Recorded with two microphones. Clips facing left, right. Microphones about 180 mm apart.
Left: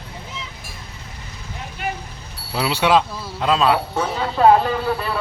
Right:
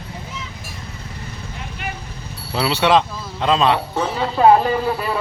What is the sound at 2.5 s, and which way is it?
Speech, 10° left (ahead or behind).